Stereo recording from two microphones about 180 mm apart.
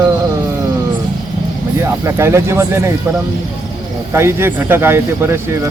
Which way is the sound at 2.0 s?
15° right (ahead or behind).